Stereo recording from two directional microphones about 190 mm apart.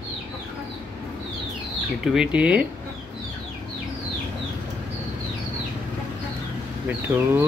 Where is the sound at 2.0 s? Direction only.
5° right (ahead or behind).